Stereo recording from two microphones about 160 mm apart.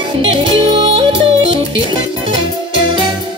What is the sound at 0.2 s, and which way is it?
Yodeling, 35° right (ahead or behind).